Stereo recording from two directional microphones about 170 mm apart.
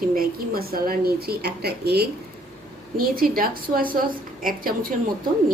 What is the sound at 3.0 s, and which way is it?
Speech, 60° right (ahead or behind).